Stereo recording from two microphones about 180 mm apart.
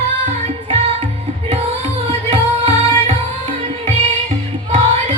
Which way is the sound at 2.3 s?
35° right (ahead or behind).